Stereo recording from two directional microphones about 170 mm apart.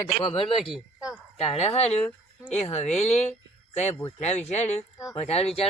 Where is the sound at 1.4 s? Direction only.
40° left (ahead or behind).